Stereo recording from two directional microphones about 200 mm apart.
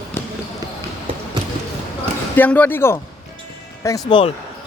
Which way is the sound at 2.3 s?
10° left (ahead or behind).